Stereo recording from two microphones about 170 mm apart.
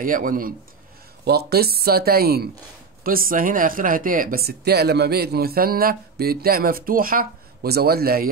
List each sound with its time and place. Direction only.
0.0 s speech: 55° right (ahead or behind)
1.2 s speech: 70° right (ahead or behind)